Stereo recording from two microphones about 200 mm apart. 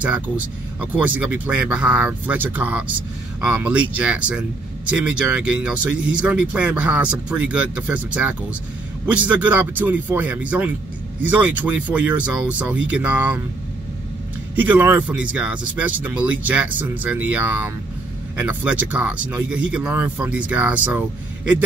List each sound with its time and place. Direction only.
0.7 s speech: 5° right (ahead or behind)
14.5 s speech: 10° right (ahead or behind)